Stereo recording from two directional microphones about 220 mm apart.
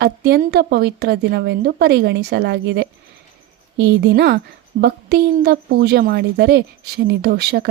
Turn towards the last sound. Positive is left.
turn(degrees=-50)  # may be behind; listen again after turning